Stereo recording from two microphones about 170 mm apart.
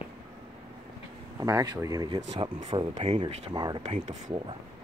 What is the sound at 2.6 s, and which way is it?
Speech, 35° right (ahead or behind).